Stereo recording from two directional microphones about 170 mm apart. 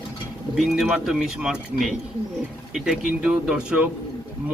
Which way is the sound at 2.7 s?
5° right (ahead or behind).